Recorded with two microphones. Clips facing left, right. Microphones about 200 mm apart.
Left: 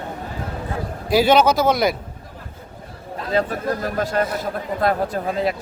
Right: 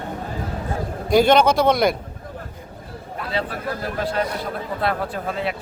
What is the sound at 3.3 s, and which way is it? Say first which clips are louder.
A man's voice: left 6 dB; 45° left (ahead or behind).